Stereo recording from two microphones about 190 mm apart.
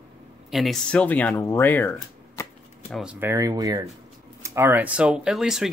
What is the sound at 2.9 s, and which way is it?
Speech, centre (ahead or behind).